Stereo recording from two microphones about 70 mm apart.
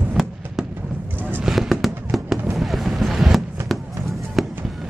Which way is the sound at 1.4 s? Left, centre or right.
Centre.